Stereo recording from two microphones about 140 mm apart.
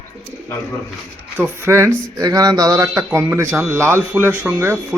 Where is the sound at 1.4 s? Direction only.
15° right (ahead or behind).